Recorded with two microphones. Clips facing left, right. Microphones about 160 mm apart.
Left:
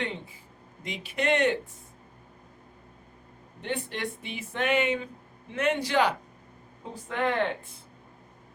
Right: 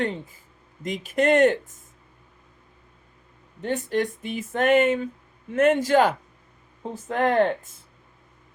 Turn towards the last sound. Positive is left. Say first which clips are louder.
# right 7 dB
turn(degrees=-45)  # may be behind; listen again after turning